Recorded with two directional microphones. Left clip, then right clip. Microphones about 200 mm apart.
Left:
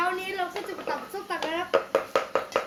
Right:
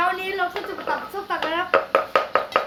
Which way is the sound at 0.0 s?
5° right (ahead or behind).